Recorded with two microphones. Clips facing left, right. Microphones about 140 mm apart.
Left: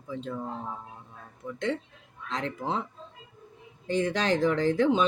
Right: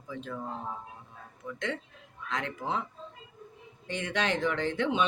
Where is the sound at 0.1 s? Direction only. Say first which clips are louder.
Left 4 dB; 30° left (ahead or behind).